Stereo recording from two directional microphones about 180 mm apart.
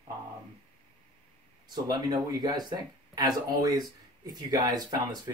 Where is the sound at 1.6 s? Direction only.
25° right (ahead or behind).